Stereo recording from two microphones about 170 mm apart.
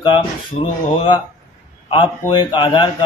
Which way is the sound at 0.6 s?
35° left (ahead or behind).